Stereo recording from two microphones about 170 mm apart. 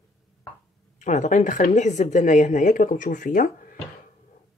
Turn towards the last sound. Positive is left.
turn(degrees=50)  # may be behind; listen again after turning